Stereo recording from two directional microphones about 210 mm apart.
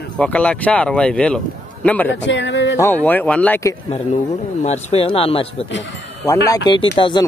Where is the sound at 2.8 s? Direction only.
10° left (ahead or behind).